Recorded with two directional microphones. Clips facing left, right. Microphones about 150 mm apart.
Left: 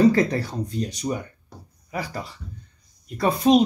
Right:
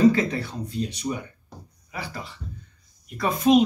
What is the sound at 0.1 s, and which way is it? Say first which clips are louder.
Speech: left 3 dB; 35° left (ahead or behind).